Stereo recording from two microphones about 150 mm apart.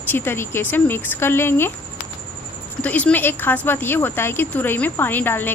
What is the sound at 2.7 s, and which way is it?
Speech, 10° left (ahead or behind).